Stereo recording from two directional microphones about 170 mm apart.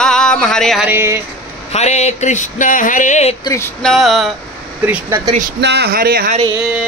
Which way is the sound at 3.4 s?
15° left (ahead or behind).